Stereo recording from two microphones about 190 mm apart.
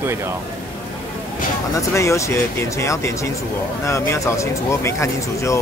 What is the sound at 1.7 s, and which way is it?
Speech, 15° left (ahead or behind).